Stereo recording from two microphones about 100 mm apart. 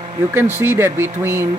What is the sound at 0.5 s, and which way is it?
Speech, 20° right (ahead or behind).